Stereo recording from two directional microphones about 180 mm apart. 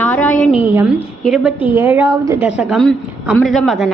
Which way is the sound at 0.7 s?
10° right (ahead or behind).